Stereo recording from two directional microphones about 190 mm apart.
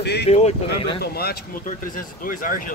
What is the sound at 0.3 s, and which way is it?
Speech, 35° left (ahead or behind).